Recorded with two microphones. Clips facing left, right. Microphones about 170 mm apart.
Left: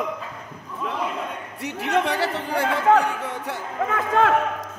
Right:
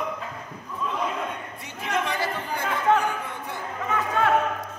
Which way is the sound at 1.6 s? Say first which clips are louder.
Left 6 dB; 70° left (ahead or behind).